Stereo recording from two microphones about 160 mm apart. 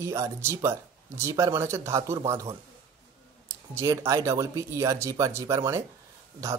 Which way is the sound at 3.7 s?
15° right (ahead or behind).